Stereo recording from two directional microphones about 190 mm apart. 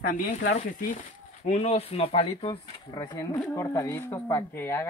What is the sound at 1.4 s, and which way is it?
Speech, 35° left (ahead or behind).